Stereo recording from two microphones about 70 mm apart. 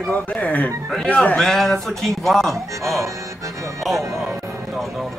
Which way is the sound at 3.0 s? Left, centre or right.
Right.